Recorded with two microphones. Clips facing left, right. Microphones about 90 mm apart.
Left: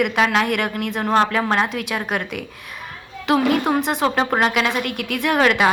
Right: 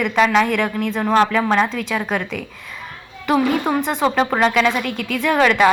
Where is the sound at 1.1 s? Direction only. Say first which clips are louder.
Right 2 dB; 25° left (ahead or behind).